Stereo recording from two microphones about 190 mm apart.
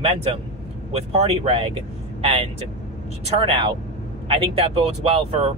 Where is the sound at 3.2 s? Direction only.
30° right (ahead or behind).